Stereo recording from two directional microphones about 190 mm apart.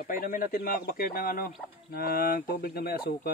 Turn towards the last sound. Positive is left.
turn(degrees=55)  # may be behind; listen again after turning